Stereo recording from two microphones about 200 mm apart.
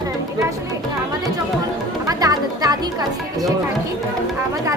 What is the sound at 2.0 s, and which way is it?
Chatter, 20° right (ahead or behind).